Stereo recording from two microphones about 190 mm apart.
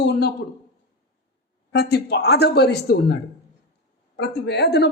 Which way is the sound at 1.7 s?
60° left (ahead or behind).